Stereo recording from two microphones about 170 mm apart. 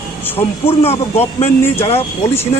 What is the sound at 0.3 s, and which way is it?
Speech, 35° left (ahead or behind).